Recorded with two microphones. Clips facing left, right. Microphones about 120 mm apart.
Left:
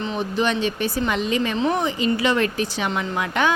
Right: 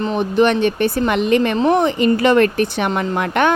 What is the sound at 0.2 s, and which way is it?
Speech, 60° right (ahead or behind).